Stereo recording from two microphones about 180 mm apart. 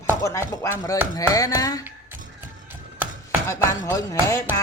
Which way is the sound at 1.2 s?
20° left (ahead or behind).